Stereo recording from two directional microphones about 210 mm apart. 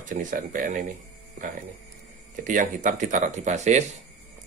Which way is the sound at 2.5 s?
40° right (ahead or behind).